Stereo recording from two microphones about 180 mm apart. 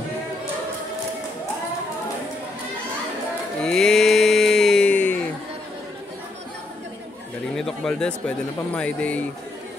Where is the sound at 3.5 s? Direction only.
5° left (ahead or behind).